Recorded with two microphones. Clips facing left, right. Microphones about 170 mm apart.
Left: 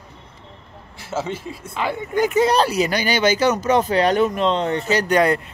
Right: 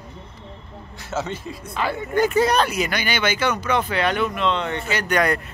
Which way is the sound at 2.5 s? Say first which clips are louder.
Left 3 dB; 35° left (ahead or behind).